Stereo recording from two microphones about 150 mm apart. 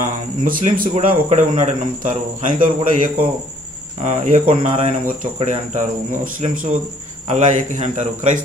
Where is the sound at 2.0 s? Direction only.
60° right (ahead or behind).